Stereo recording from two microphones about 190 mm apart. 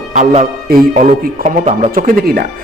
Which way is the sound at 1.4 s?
35° right (ahead or behind).